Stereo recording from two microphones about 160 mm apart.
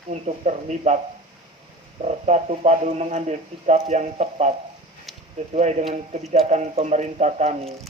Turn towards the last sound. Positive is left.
turn(degrees=-40)  # may be behind; listen again after turning